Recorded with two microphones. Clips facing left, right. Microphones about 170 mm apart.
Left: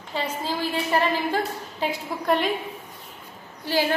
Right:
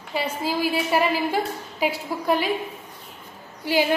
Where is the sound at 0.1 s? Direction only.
10° right (ahead or behind).